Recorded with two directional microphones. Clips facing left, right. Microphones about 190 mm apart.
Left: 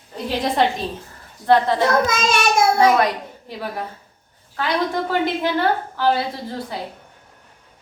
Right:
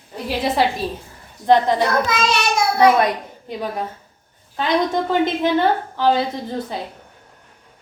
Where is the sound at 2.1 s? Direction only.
45° left (ahead or behind).